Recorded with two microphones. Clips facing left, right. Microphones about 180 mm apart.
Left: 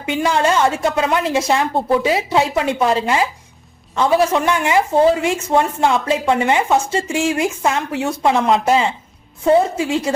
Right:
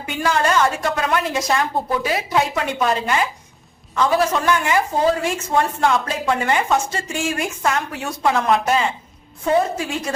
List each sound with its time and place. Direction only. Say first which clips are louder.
0.0 s a woman's voice: left 3 dB; 25° left (ahead or behind)